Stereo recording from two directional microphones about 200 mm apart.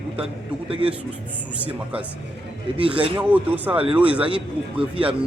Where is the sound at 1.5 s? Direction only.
5° right (ahead or behind).